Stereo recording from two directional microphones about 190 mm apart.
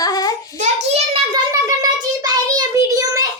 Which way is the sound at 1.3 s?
20° right (ahead or behind).